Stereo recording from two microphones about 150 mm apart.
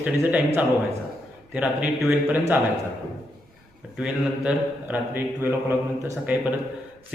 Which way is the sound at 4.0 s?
5° right (ahead or behind).